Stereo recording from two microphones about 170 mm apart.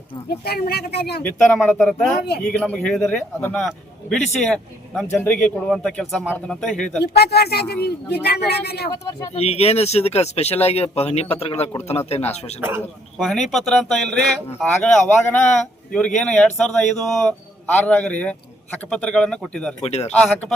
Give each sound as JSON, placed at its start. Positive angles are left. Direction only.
{"t": 0.4, "sound": "speech", "side_deg": 65}
{"t": 1.2, "sound": "a man's voice", "side_deg": 10}
{"t": 7.0, "sound": "speech", "side_deg": 70}
{"t": 8.9, "sound": "speech", "side_deg": 20}
{"t": 9.3, "sound": "speech", "side_deg": 40}
{"t": 13.1, "sound": "a man's voice", "side_deg": 0}
{"t": 19.8, "sound": "speech", "side_deg": 40}